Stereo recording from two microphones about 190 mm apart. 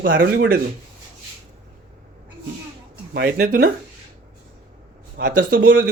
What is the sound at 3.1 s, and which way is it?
Speech, 50° right (ahead or behind).